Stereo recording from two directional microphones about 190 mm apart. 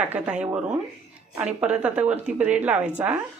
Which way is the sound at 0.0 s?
5° right (ahead or behind).